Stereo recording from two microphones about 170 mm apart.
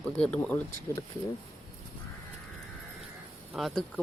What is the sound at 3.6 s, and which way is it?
Speech, centre (ahead or behind).